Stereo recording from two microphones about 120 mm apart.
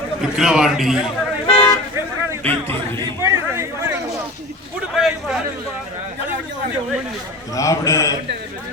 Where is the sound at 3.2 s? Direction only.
25° right (ahead or behind).